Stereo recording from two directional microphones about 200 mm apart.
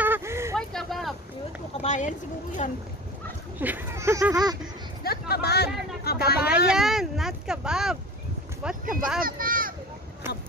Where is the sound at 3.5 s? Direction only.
10° right (ahead or behind).